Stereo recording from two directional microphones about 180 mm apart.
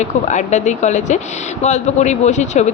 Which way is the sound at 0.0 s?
40° left (ahead or behind).